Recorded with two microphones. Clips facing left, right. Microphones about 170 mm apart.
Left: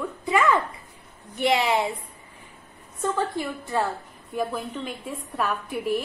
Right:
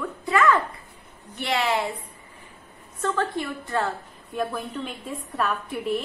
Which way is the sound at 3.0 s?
10° left (ahead or behind).